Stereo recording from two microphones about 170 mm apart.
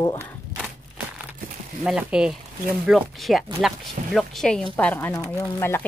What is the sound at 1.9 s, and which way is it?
Speech, 5° right (ahead or behind).